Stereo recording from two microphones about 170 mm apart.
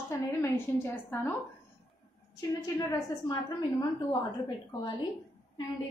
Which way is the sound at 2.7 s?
20° left (ahead or behind).